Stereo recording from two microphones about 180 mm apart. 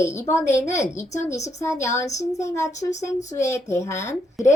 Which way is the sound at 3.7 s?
15° left (ahead or behind).